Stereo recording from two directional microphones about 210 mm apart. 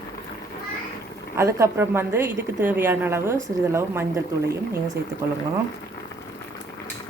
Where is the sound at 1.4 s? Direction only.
15° right (ahead or behind).